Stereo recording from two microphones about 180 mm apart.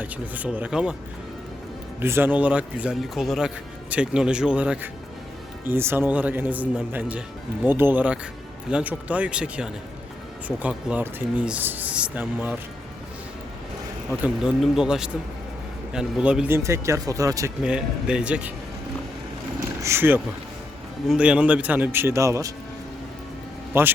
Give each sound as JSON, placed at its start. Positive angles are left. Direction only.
{"t": 0.0, "sound": "speech", "side_deg": -10}
{"t": 2.0, "sound": "speech", "side_deg": -15}
{"t": 14.1, "sound": "speech", "side_deg": -5}
{"t": 17.6, "sound": "speech", "side_deg": -5}
{"t": 19.8, "sound": "speech", "side_deg": -15}
{"t": 23.7, "sound": "speech", "side_deg": -10}